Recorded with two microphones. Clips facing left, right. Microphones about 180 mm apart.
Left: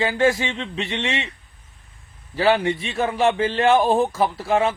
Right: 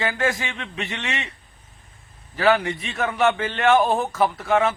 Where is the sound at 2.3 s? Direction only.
30° left (ahead or behind).